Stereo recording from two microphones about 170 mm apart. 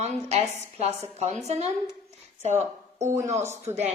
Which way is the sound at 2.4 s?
40° right (ahead or behind).